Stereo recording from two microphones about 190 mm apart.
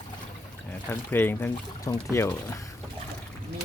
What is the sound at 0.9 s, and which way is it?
Speech, 10° left (ahead or behind).